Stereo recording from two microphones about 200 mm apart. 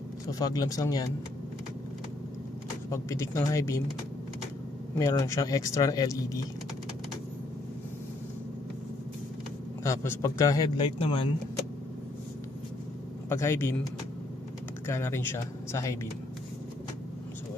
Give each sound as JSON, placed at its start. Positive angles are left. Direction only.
{"t": 0.3, "sound": "speech", "side_deg": 20}
{"t": 2.9, "sound": "speech", "side_deg": 15}
{"t": 4.9, "sound": "speech", "side_deg": 15}
{"t": 9.8, "sound": "a man's voice", "side_deg": 15}
{"t": 13.3, "sound": "speech", "side_deg": 15}
{"t": 14.9, "sound": "speech", "side_deg": 10}